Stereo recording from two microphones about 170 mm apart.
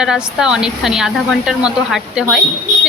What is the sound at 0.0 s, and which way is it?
A woman's voice, 5° right (ahead or behind).